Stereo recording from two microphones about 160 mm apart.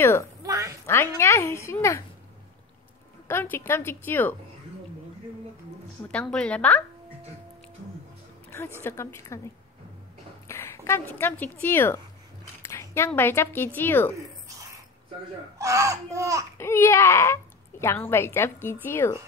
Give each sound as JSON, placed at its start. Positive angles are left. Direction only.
{"t": 0.4, "sound": "a sound", "side_deg": -20}
{"t": 0.8, "sound": "speech", "side_deg": 15}
{"t": 3.3, "sound": "speech", "side_deg": 15}
{"t": 6.0, "sound": "speech", "side_deg": 5}
{"t": 8.8, "sound": "speech", "side_deg": 15}
{"t": 10.5, "sound": "a woman's voice", "side_deg": 15}
{"t": 15.6, "sound": "speech", "side_deg": -20}
{"t": 16.5, "sound": "speech", "side_deg": 15}